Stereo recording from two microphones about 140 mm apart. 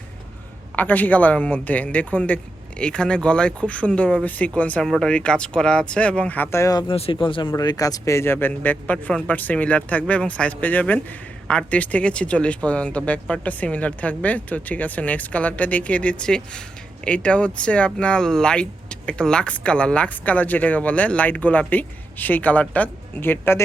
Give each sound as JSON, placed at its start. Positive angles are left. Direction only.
{"t": 0.8, "sound": "speech", "side_deg": 10}
{"t": 6.8, "sound": "speech", "side_deg": 40}
{"t": 7.5, "sound": "speech", "side_deg": 25}